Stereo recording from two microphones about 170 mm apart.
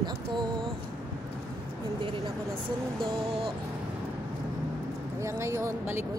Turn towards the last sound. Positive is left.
turn(degrees=-15)  # may be behind; listen again after turning